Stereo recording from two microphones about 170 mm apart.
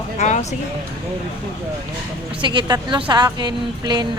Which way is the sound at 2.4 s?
25° right (ahead or behind).